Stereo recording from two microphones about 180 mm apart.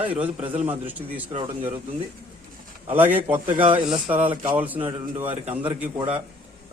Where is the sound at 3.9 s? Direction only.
10° right (ahead or behind).